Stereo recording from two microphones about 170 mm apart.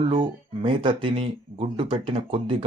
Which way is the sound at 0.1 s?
30° right (ahead or behind).